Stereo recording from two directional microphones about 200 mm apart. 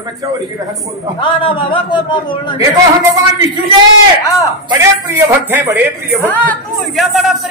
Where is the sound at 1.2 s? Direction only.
25° left (ahead or behind).